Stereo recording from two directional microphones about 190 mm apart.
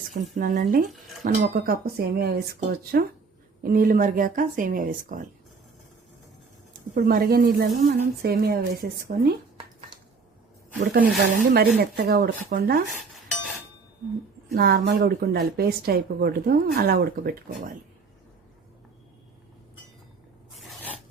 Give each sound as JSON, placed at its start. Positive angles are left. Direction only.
{"t": 0.3, "sound": "speech", "side_deg": -45}
{"t": 6.9, "sound": "speech", "side_deg": -50}
{"t": 11.3, "sound": "speech", "side_deg": -55}
{"t": 12.9, "sound": "dishes", "side_deg": 0}
{"t": 14.5, "sound": "speech", "side_deg": -55}
{"t": 20.6, "sound": "a sound", "side_deg": 0}